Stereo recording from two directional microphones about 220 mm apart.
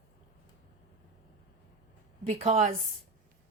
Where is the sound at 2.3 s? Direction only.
30° right (ahead or behind).